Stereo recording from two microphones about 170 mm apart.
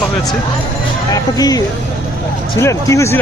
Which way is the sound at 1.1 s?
20° left (ahead or behind).